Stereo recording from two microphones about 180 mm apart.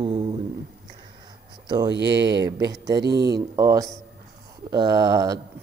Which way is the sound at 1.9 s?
70° right (ahead or behind).